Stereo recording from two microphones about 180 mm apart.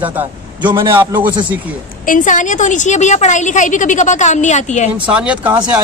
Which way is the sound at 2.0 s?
45° left (ahead or behind).